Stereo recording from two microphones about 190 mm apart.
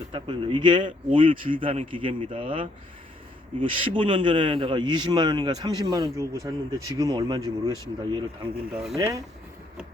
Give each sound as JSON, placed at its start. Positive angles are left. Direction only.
{"t": 0.1, "sound": "speech", "side_deg": -25}
{"t": 8.7, "sound": "speech", "side_deg": -5}